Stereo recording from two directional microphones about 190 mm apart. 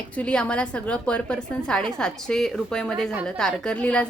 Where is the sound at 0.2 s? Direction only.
5° left (ahead or behind).